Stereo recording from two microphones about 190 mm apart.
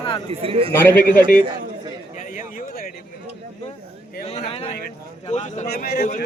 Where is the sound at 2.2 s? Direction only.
45° left (ahead or behind).